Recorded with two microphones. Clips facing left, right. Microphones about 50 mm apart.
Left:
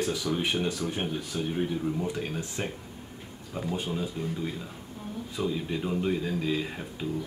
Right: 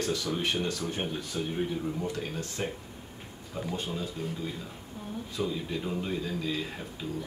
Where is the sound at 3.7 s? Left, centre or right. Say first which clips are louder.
Left 3 dB; centre.